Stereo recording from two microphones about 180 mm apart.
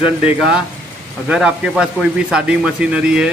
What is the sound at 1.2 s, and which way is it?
A man's voice, 5° right (ahead or behind).